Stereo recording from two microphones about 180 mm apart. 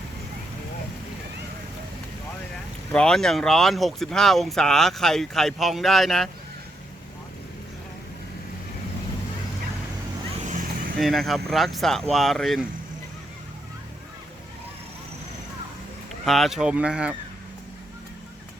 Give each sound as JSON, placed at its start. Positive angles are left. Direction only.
{"t": 2.9, "sound": "speech", "side_deg": 5}
{"t": 10.4, "sound": "vehicle", "side_deg": -45}
{"t": 10.9, "sound": "speech", "side_deg": 0}
{"t": 16.2, "sound": "speech", "side_deg": 0}